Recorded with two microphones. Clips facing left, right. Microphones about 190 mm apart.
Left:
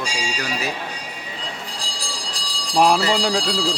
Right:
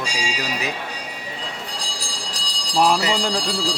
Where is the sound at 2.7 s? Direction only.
5° left (ahead or behind).